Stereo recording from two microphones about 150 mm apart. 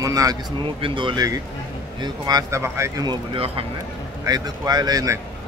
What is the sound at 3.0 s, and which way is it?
Speech, 35° right (ahead or behind).